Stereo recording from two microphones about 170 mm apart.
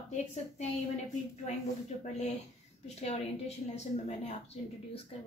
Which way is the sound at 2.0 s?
40° left (ahead or behind).